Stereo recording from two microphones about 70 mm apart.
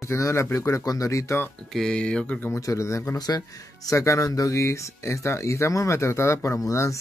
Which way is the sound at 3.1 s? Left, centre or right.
Left.